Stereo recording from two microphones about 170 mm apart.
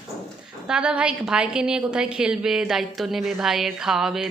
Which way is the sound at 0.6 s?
5° right (ahead or behind).